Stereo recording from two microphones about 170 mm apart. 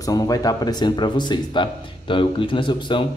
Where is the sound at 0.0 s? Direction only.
20° left (ahead or behind).